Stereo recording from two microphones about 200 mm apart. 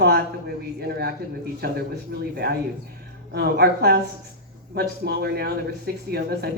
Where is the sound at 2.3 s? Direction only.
55° right (ahead or behind).